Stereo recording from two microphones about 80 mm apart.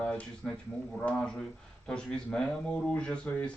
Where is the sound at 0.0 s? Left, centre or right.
Centre.